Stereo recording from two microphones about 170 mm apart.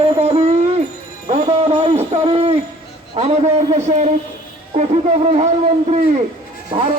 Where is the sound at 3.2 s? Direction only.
40° right (ahead or behind).